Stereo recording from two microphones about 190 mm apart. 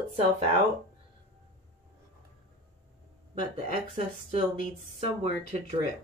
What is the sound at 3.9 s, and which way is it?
Speech, 40° right (ahead or behind).